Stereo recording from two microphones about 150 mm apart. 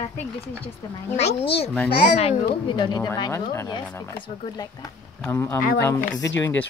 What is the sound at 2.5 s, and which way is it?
A woman's voice, 35° left (ahead or behind).